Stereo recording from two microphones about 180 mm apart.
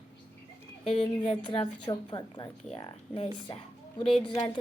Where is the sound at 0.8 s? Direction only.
30° left (ahead or behind).